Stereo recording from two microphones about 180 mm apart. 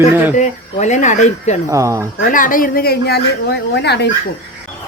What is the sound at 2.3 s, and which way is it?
A woman's voice, 50° left (ahead or behind).